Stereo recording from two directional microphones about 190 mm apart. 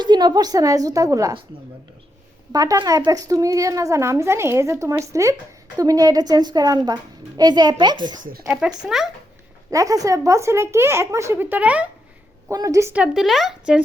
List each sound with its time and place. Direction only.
0.0 s a woman's voice: 20° right (ahead or behind)
2.5 s a woman's voice: 20° right (ahead or behind)
8.2 s speech: 50° right (ahead or behind)
8.4 s speech: 5° right (ahead or behind)
9.7 s speech: 15° right (ahead or behind)
12.5 s speech: 15° right (ahead or behind)